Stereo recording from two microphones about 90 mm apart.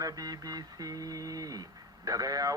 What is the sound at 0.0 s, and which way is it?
Speech, 45° right (ahead or behind).